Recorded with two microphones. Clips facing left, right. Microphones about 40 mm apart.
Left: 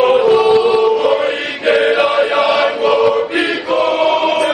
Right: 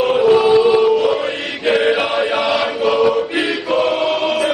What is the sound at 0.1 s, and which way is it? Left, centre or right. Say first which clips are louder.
Music: left 2 dB; centre.